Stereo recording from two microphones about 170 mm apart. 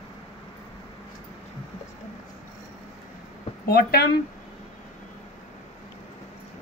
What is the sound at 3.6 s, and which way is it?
Speech, 65° left (ahead or behind).